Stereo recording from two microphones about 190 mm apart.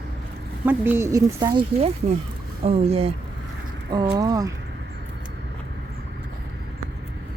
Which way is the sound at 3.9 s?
20° right (ahead or behind).